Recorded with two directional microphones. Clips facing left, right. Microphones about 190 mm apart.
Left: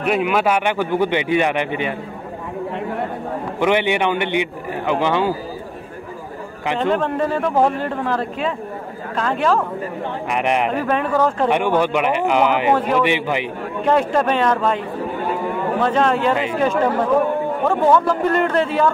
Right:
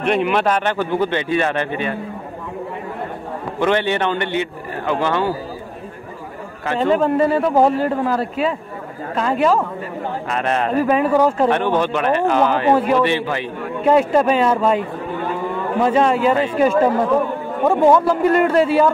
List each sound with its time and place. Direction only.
0.0 s speech: 5° left (ahead or behind)
3.5 s speech: 15° left (ahead or behind)
6.8 s a man's voice: 5° right (ahead or behind)
10.3 s speech: 15° left (ahead or behind)
10.8 s a man's voice: 10° right (ahead or behind)
11.4 s speech: 15° left (ahead or behind)
12.7 s a man's voice: 10° right (ahead or behind)
13.0 s speech: 15° left (ahead or behind)
13.8 s a man's voice: 5° right (ahead or behind)
15.8 s a man's voice: 10° right (ahead or behind)